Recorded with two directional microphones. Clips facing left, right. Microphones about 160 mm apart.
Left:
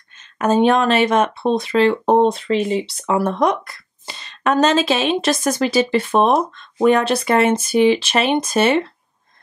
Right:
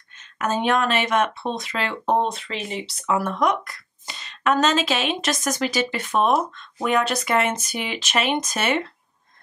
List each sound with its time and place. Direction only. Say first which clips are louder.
0.4 s speech: left 7 dB; 30° left (ahead or behind)